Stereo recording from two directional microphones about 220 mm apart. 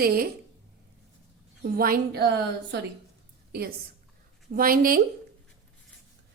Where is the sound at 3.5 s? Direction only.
45° right (ahead or behind).